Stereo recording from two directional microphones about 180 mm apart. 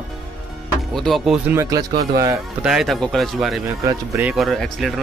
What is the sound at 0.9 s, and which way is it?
Speech, centre (ahead or behind).